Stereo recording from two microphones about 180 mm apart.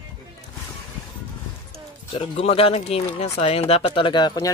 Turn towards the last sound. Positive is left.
turn(degrees=25)  # may be behind; listen again after turning